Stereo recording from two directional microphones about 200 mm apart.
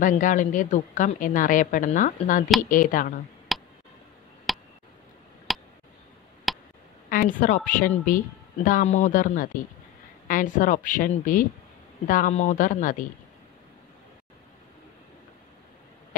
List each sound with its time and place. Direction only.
0.0 s a woman's voice: 40° left (ahead or behind)
3.5 s tick: centre (ahead or behind)
4.5 s a sound: centre (ahead or behind)
7.1 s a woman's voice: 45° left (ahead or behind)